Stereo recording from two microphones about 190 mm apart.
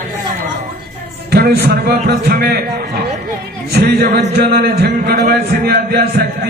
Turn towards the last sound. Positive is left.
turn(degrees=-55)  # may be behind; listen again after turning